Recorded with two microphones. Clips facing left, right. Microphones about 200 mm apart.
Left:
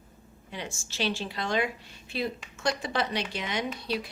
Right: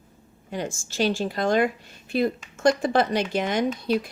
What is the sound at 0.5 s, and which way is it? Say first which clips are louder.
Speech: right 8 dB; 45° right (ahead or behind).